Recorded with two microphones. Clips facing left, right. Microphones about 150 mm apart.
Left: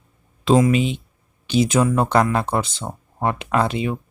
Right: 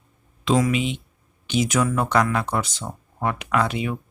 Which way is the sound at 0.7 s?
35° left (ahead or behind).